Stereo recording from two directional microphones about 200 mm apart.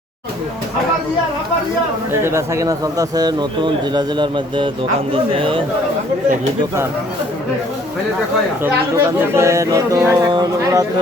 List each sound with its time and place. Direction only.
2.2 s a man's voice: 15° right (ahead or behind)
8.6 s speech: 15° right (ahead or behind)